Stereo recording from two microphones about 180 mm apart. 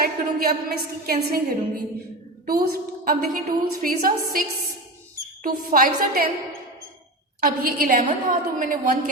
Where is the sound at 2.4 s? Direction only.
55° right (ahead or behind).